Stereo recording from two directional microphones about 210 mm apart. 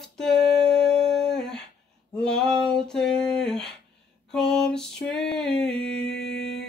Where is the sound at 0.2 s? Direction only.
5° left (ahead or behind).